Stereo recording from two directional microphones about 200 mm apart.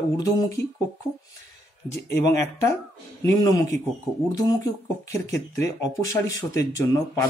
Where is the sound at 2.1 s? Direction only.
15° left (ahead or behind).